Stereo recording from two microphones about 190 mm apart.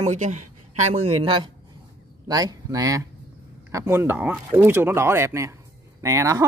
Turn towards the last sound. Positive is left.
turn(degrees=-15)  # may be behind; listen again after turning